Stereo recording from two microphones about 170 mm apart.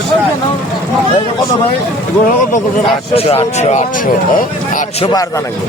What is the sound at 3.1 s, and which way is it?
A man's voice, 35° left (ahead or behind).